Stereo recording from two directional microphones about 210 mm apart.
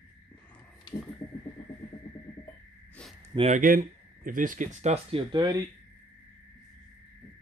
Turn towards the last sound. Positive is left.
turn(degrees=-20)  # may be behind; listen again after turning